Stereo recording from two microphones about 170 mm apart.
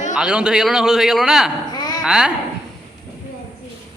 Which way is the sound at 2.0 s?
5° right (ahead or behind).